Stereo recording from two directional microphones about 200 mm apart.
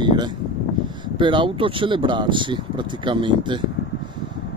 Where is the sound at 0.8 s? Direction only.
25° right (ahead or behind).